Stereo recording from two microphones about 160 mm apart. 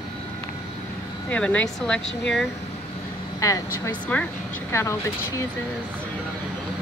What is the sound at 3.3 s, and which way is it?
Speech, 20° left (ahead or behind).